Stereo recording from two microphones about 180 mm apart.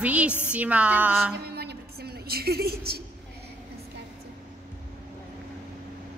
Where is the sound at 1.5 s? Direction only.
65° right (ahead or behind).